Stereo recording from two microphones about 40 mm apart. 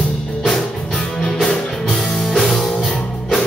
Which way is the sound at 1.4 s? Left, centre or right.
Centre.